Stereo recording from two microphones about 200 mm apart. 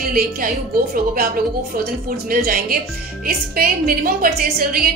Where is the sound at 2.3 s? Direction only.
50° right (ahead or behind).